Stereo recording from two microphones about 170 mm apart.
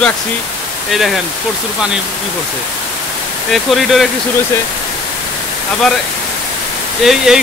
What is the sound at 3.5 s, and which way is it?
Speech, centre (ahead or behind).